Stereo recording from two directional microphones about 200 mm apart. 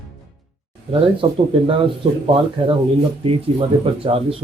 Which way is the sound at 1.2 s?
25° right (ahead or behind).